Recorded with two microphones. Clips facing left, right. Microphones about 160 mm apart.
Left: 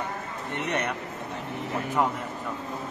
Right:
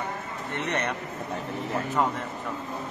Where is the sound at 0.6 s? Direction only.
10° left (ahead or behind).